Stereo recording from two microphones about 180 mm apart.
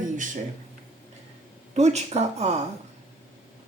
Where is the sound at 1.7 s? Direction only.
40° right (ahead or behind).